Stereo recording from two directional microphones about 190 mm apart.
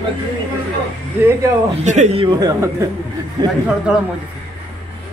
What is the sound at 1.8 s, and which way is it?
Speech, 35° right (ahead or behind).